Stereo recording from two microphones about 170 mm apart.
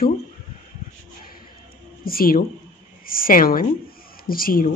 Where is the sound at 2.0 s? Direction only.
60° left (ahead or behind).